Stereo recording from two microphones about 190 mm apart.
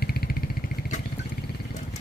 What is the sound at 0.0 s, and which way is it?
Vehicle, 55° left (ahead or behind).